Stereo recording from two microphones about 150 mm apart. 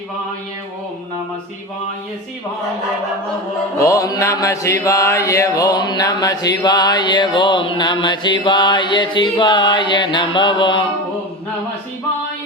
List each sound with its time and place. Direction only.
3.8 s mantra: 20° left (ahead or behind)